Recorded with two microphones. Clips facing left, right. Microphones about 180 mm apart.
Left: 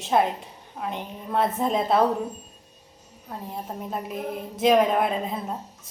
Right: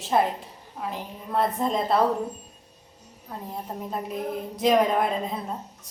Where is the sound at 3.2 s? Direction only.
Centre (ahead or behind).